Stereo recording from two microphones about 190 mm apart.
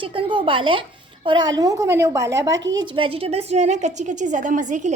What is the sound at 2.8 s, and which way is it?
A woman's voice, 25° right (ahead or behind).